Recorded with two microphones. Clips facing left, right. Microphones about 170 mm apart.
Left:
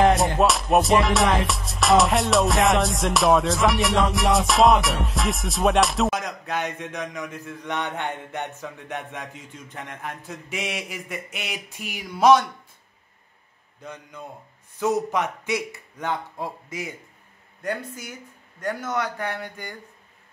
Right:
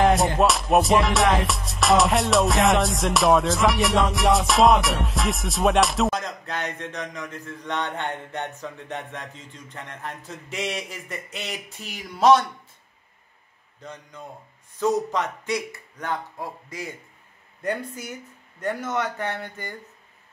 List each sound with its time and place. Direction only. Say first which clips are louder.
0.0 s music: even; centre (ahead or behind)
6.6 s mantra: left 1 dB; 5° left (ahead or behind)
15.0 s mantra: left 1 dB; 10° left (ahead or behind)
15.5 s speech: right 1 dB; 20° left (ahead or behind)
17.6 s mantra: right 1 dB; 5° left (ahead or behind)
18.9 s speech: left 1 dB; 5° right (ahead or behind)
19.1 s mantra: even; 10° left (ahead or behind)